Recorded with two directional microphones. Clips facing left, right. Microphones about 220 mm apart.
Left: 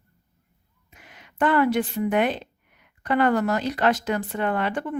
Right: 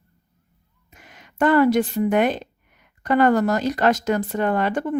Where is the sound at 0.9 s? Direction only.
45° right (ahead or behind).